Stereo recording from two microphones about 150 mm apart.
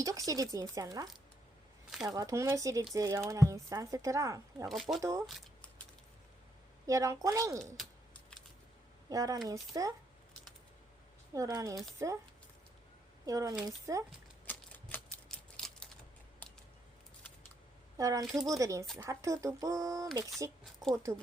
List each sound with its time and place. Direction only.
0.0 s speech: 20° right (ahead or behind)
4.7 s speech: centre (ahead or behind)
4.9 s speech: 20° right (ahead or behind)
5.2 s a sound: centre (ahead or behind)
6.8 s speech: 20° right (ahead or behind)
7.8 s typing: 5° left (ahead or behind)
9.0 s speech: 25° right (ahead or behind)
11.3 s speech: 20° right (ahead or behind)
13.2 s speech: 20° right (ahead or behind)
14.4 s typewriter: 10° left (ahead or behind)
17.9 s speech: 20° right (ahead or behind)